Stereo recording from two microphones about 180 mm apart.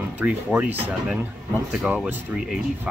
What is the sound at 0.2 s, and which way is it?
Speech, 10° right (ahead or behind).